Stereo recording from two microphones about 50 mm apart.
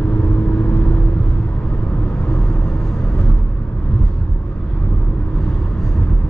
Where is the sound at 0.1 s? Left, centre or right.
Left.